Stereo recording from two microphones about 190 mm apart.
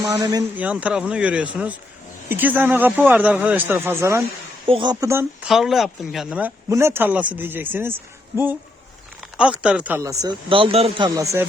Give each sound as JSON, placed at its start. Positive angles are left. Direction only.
{"t": 0.0, "sound": "speech", "side_deg": -20}
{"t": 0.5, "sound": "speech", "side_deg": -5}
{"t": 4.6, "sound": "speech", "side_deg": -25}
{"t": 5.5, "sound": "speech", "side_deg": 0}
{"t": 9.4, "sound": "speech", "side_deg": -5}